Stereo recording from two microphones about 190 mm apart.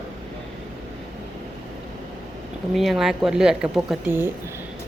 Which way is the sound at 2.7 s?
Centre (ahead or behind).